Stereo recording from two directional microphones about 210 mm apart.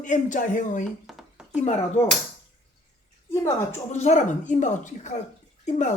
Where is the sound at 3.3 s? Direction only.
15° left (ahead or behind).